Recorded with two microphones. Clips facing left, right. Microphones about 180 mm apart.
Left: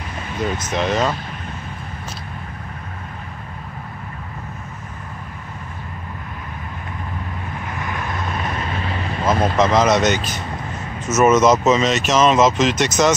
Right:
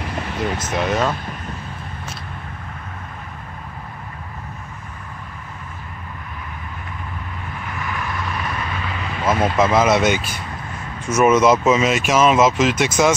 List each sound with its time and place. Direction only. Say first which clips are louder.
0.7 s speech: left 1 dB; 5° right (ahead or behind)
7.9 s vehicle: even; 40° left (ahead or behind)
8.2 s vehicle: left 1 dB; 25° left (ahead or behind)
9.2 s vehicle: even; 5° right (ahead or behind)
9.6 s speech: even; 5° right (ahead or behind)